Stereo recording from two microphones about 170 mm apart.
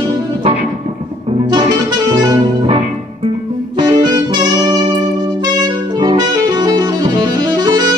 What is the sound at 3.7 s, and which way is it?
Music, 25° right (ahead or behind).